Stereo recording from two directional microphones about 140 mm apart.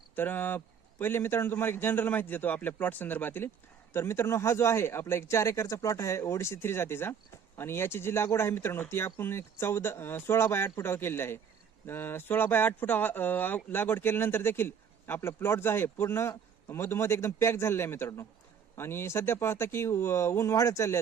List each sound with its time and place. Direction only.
0.2 s speech: 15° left (ahead or behind)